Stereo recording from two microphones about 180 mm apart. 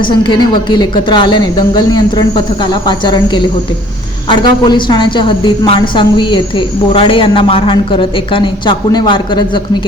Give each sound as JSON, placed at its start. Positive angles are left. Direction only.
{"t": 0.0, "sound": "a woman's voice", "side_deg": 25}